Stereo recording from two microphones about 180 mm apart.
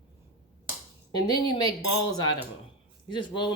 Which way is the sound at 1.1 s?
25° left (ahead or behind).